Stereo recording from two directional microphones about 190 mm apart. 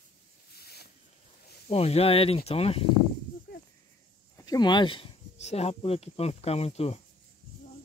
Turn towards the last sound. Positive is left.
turn(degrees=35)  # may be behind; listen again after turning